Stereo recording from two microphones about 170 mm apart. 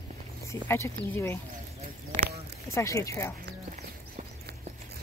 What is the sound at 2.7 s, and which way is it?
Speech, 20° left (ahead or behind).